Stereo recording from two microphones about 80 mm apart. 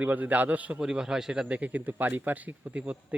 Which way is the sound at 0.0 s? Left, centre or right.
Right.